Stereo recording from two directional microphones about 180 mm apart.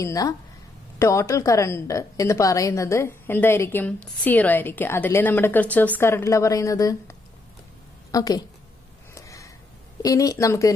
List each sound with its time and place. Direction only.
0.0 s a woman's voice: 20° left (ahead or behind)
9.1 s a sound: 15° left (ahead or behind)
10.0 s a woman's voice: 20° left (ahead or behind)